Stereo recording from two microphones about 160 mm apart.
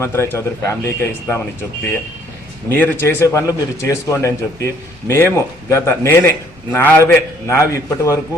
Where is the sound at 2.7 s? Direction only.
10° left (ahead or behind).